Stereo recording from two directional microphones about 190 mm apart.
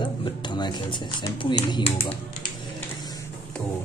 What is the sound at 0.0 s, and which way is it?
Speech, 25° left (ahead or behind).